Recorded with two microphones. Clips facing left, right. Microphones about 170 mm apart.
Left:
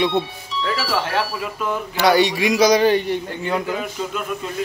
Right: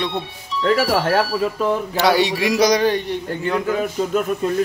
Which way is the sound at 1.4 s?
35° right (ahead or behind).